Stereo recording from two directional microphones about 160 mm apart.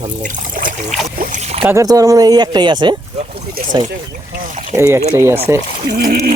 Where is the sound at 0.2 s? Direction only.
60° right (ahead or behind).